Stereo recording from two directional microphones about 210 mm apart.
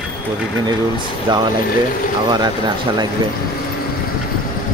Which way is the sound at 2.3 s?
20° right (ahead or behind).